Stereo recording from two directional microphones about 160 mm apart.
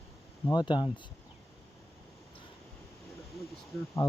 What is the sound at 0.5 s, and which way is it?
Speech, 30° left (ahead or behind).